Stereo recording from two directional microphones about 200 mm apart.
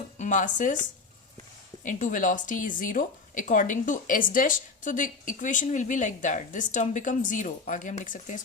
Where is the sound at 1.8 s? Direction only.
40° left (ahead or behind).